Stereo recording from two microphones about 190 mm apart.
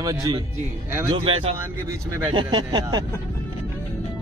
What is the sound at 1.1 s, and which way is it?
Speech, 30° right (ahead or behind).